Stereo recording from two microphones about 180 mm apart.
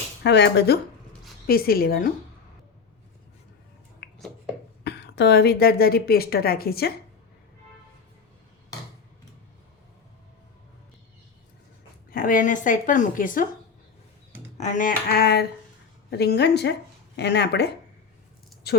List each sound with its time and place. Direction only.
0.2 s a woman's voice: 75° left (ahead or behind)
1.5 s a woman's voice: 55° left (ahead or behind)
4.0 s a sound: 65° left (ahead or behind)
4.8 s a woman's voice: 70° left (ahead or behind)
12.1 s a woman's voice: 50° left (ahead or behind)
14.6 s a woman's voice: 45° left (ahead or behind); by 18.8 s 60° left (ahead or behind)